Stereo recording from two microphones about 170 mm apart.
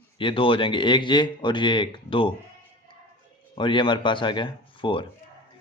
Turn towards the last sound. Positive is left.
turn(degrees=30)  # may be behind; listen again after turning